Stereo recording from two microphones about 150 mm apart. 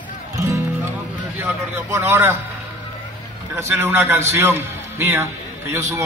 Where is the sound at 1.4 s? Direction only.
15° right (ahead or behind).